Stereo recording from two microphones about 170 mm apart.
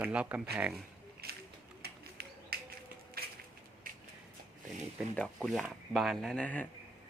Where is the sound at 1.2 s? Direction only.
65° right (ahead or behind).